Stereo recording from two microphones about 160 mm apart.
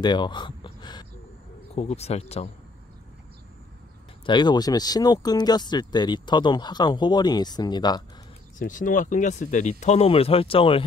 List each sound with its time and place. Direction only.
0.0 s speech: 30° left (ahead or behind)
1.8 s speech: 40° left (ahead or behind)
4.3 s speech: 30° left (ahead or behind)
8.5 s speech: 55° left (ahead or behind); by 10.8 s 35° left (ahead or behind)